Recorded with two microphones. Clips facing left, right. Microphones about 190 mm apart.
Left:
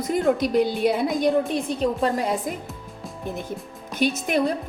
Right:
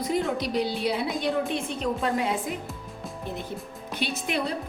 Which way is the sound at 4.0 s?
45° left (ahead or behind).